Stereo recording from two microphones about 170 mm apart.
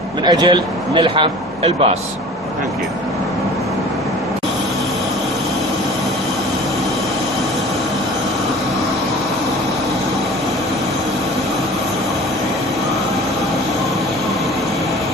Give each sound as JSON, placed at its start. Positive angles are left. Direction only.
{"t": 0.3, "sound": "a man's voice", "side_deg": -25}